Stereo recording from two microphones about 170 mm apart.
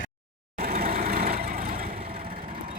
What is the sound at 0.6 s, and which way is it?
Vehicle, 60° right (ahead or behind).